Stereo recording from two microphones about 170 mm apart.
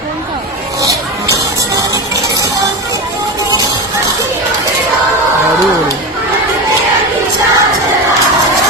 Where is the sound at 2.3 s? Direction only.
20° right (ahead or behind).